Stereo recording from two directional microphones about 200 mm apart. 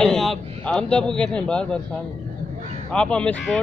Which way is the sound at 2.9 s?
5° left (ahead or behind).